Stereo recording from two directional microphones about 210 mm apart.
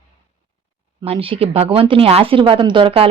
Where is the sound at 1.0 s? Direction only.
25° right (ahead or behind).